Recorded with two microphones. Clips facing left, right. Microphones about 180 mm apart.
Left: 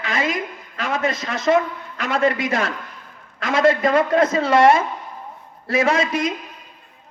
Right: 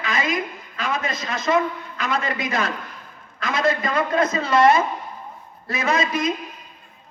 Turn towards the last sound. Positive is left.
turn(degrees=75)  # may be behind; listen again after turning